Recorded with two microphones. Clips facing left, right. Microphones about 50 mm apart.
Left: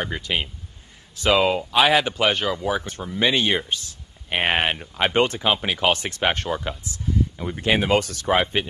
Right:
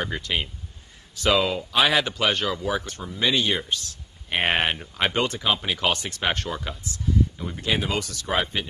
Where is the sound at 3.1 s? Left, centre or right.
Left.